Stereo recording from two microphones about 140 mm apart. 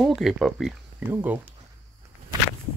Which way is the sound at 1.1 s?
15° right (ahead or behind).